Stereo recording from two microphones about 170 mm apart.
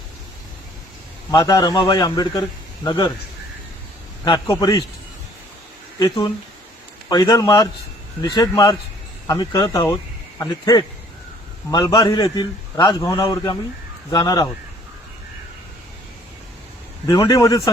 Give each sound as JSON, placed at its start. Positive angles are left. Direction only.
{"t": 1.3, "sound": "a man's voice", "side_deg": 20}
{"t": 4.3, "sound": "a man's voice", "side_deg": 20}
{"t": 6.0, "sound": "a man's voice", "side_deg": 25}
{"t": 17.1, "sound": "a man's voice", "side_deg": 20}